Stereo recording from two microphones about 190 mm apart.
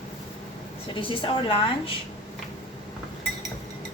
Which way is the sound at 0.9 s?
25° left (ahead or behind).